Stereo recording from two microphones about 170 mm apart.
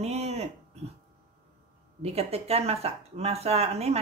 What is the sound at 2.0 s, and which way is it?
Speech, 40° right (ahead or behind).